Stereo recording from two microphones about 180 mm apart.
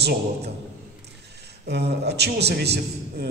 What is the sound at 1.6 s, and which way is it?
A man's voice, 65° right (ahead or behind).